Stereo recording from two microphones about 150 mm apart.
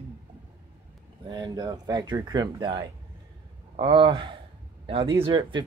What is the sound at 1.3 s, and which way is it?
A man's voice, 30° right (ahead or behind).